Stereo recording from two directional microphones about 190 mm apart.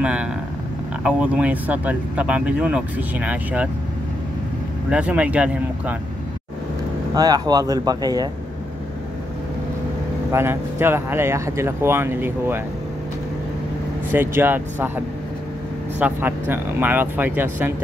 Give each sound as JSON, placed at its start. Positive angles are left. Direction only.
{"t": 0.0, "sound": "speech", "side_deg": -5}
{"t": 4.8, "sound": "speech", "side_deg": -5}
{"t": 7.2, "sound": "speech", "side_deg": -20}
{"t": 10.3, "sound": "speech", "side_deg": -10}
{"t": 14.1, "sound": "speech", "side_deg": -10}
{"t": 16.0, "sound": "speech", "side_deg": -10}